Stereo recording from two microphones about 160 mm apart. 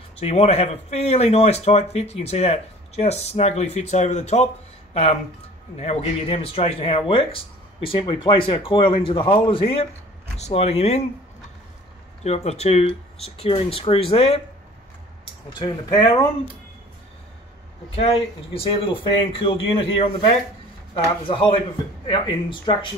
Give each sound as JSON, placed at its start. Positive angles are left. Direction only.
{"t": 0.2, "sound": "speech", "side_deg": 40}
{"t": 5.8, "sound": "speech", "side_deg": 40}
{"t": 12.2, "sound": "speech", "side_deg": 40}
{"t": 15.6, "sound": "speech", "side_deg": 25}
{"t": 17.9, "sound": "speech", "side_deg": 40}